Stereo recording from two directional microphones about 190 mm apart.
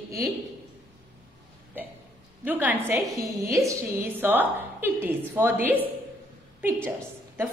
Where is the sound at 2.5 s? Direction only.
10° right (ahead or behind).